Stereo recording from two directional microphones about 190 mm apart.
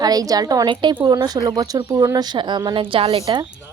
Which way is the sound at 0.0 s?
20° right (ahead or behind).